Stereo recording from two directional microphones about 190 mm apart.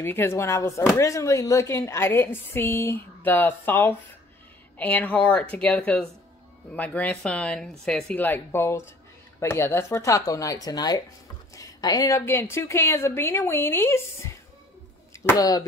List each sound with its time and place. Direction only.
0.0 s a woman's voice: 10° left (ahead or behind)